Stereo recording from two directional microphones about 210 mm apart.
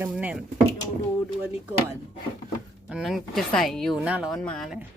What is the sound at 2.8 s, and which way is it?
A woman's voice, centre (ahead or behind).